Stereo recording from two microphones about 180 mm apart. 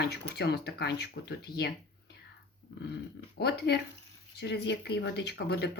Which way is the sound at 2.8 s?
70° left (ahead or behind).